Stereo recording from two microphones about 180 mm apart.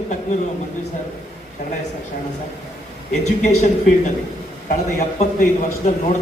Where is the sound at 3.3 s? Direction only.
40° left (ahead or behind).